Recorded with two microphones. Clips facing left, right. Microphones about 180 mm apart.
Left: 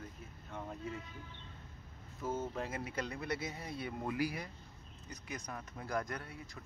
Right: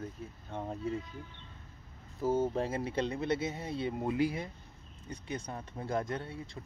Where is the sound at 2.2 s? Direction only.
30° right (ahead or behind).